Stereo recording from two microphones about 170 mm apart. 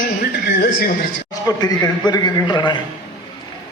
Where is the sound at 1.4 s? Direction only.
20° left (ahead or behind).